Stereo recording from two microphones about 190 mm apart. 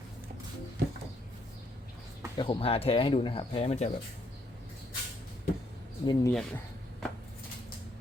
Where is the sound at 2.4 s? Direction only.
25° left (ahead or behind).